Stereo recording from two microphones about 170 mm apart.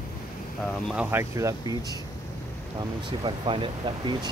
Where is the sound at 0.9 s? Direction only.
10° right (ahead or behind).